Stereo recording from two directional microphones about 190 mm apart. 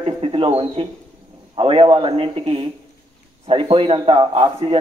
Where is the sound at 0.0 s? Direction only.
30° right (ahead or behind).